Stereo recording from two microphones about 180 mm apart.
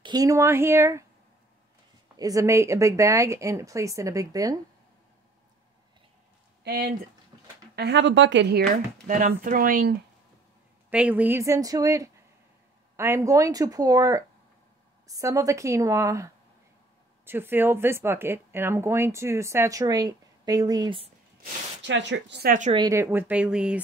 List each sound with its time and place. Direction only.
0.0 s speech: 20° right (ahead or behind)
2.1 s speech: 20° right (ahead or behind)
6.6 s speech: 55° right (ahead or behind)
7.7 s speech: 70° right (ahead or behind)
9.0 s speech: 50° right (ahead or behind)
10.9 s speech: 5° right (ahead or behind)
21.8 s speech: 85° right
22.7 s speech: 20° right (ahead or behind); by 23.8 s 5° right (ahead or behind)